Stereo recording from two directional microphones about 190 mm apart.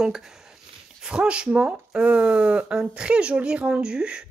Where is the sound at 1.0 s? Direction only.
5° right (ahead or behind).